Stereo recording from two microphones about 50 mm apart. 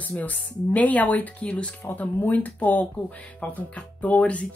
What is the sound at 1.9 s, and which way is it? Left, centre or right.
A woman's voice, left.